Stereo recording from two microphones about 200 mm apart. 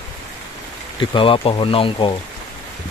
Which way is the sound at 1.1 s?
25° left (ahead or behind).